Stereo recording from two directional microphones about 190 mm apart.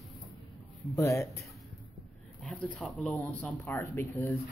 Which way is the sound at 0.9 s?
15° left (ahead or behind).